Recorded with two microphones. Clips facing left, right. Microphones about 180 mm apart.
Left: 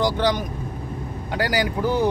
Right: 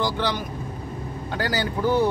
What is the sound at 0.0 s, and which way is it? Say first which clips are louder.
Speech: left 4 dB; 15° left (ahead or behind).